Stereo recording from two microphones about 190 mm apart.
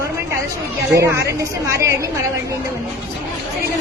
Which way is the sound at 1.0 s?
15° right (ahead or behind).